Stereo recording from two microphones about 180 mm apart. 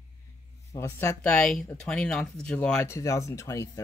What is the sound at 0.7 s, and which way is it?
Speech, 15° left (ahead or behind).